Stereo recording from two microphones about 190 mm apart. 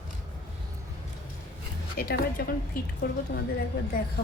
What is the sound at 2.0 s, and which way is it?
Speech, 50° left (ahead or behind).